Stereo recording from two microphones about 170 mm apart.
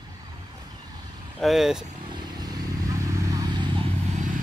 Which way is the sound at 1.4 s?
Centre (ahead or behind).